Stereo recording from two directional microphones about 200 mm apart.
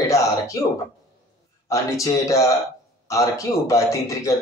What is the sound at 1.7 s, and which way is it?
A man's voice, 15° left (ahead or behind).